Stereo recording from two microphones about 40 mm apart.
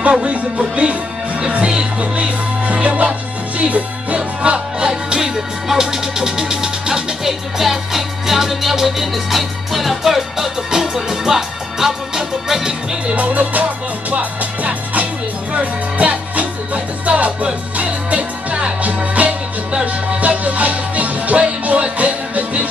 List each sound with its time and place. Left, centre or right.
0.3 s music: right
2.0 s music: right
3.5 s speech: right
4.4 s music: right
13.0 s music: right